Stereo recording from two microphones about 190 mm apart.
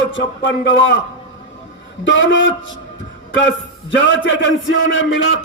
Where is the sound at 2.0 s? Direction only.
75° left (ahead or behind).